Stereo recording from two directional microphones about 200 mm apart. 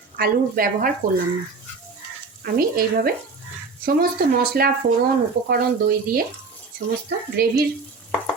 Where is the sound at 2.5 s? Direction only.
50° right (ahead or behind).